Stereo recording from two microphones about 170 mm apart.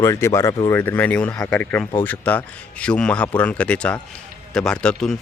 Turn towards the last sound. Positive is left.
turn(degrees=5)  # may be behind; listen again after turning